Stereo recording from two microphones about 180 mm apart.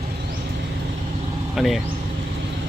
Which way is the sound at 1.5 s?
Centre (ahead or behind).